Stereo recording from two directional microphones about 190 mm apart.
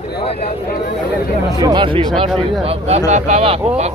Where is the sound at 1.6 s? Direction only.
20° right (ahead or behind).